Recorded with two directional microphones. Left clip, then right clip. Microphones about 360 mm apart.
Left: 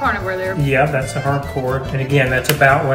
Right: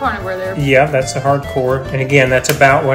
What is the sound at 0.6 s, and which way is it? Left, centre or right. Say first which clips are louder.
Speech: right 6 dB; centre.